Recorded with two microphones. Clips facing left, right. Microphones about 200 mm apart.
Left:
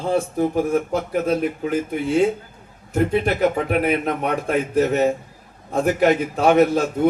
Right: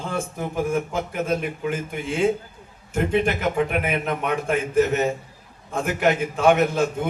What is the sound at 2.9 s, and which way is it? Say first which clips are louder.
A man's voice: left 2 dB; 35° left (ahead or behind).